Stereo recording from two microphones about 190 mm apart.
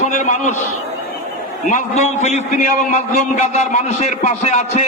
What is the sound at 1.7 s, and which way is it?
A man's voice, 40° left (ahead or behind).